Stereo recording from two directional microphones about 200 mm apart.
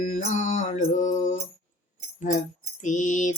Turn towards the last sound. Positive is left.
turn(degrees=40)  # may be behind; listen again after turning